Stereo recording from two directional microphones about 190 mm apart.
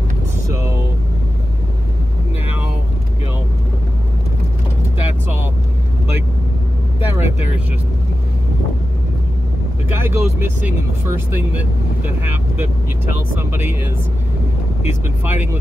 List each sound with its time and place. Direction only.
7.0 s vehicle: 10° right (ahead or behind)
9.9 s vehicle: 10° right (ahead or behind)
14.8 s speech: 10° right (ahead or behind)